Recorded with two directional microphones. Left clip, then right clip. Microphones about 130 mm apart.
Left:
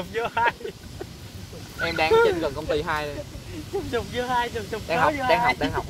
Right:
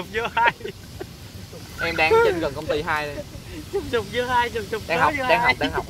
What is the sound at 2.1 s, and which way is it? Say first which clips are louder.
Speech: even; 45° right (ahead or behind).